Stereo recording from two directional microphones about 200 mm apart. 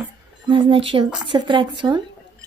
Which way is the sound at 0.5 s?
25° right (ahead or behind).